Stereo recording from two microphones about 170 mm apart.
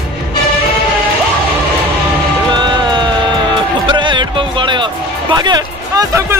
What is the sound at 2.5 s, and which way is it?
Music, 25° right (ahead or behind).